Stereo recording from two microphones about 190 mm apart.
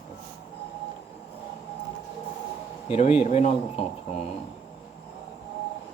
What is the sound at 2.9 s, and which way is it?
Speech, 30° left (ahead or behind).